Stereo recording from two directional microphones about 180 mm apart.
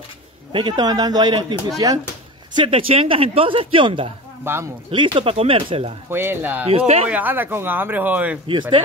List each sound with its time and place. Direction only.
0.5 s speech: 25° right (ahead or behind)
4.5 s a man's voice: 15° right (ahead or behind)
4.9 s speech: 30° right (ahead or behind)
6.0 s a man's voice: 10° right (ahead or behind)
8.5 s speech: 25° right (ahead or behind)